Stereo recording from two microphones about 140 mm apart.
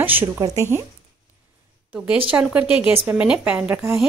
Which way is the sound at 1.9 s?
10° right (ahead or behind).